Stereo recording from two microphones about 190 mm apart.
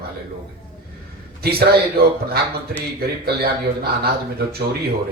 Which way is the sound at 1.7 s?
55° right (ahead or behind).